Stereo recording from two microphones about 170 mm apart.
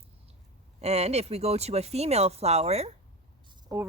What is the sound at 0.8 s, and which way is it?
Speech, 40° right (ahead or behind).